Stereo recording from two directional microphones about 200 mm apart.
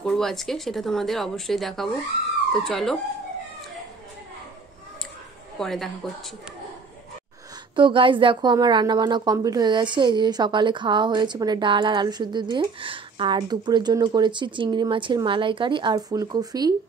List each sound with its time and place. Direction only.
0.0 s speech: centre (ahead or behind)
5.6 s speech: centre (ahead or behind)
7.7 s speech: 25° right (ahead or behind)